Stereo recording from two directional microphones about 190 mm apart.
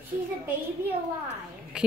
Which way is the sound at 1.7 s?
5° right (ahead or behind).